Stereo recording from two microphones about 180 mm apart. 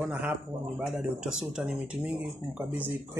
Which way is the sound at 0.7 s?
Centre (ahead or behind).